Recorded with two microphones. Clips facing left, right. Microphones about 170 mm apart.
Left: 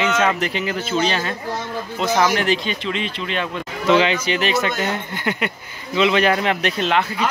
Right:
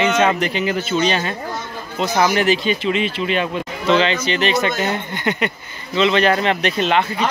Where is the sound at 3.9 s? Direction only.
10° left (ahead or behind).